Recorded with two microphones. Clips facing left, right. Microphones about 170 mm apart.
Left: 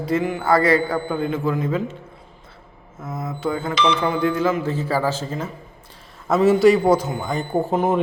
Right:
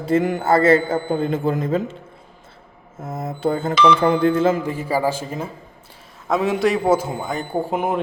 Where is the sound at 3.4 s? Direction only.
30° right (ahead or behind).